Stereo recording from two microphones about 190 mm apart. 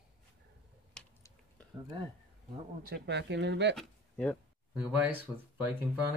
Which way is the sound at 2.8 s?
60° right (ahead or behind).